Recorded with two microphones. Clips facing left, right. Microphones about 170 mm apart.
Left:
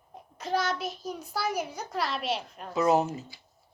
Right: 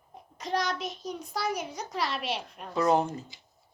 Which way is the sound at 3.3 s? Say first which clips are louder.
Left 1 dB; 20° right (ahead or behind).